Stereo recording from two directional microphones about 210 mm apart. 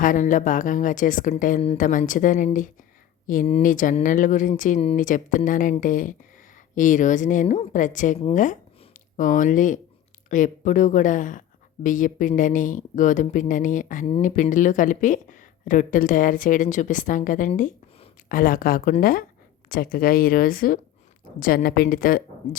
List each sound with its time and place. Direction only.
0.0 s speech: 40° left (ahead or behind)